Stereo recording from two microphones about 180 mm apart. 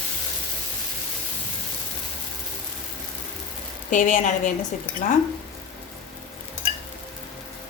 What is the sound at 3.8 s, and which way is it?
Speech, 45° left (ahead or behind).